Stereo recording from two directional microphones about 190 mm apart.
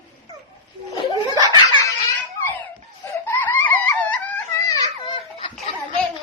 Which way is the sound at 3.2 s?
10° left (ahead or behind).